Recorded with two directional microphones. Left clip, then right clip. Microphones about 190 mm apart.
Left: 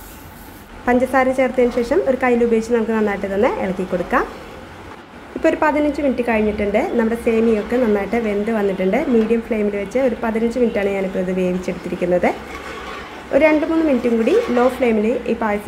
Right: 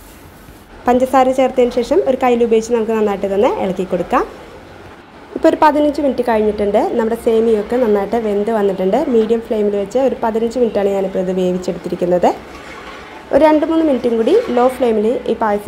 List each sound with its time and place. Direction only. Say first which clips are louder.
0.8 s a woman's voice: right 4 dB; 15° right (ahead or behind)
5.4 s a woman's voice: right 5 dB; 15° right (ahead or behind)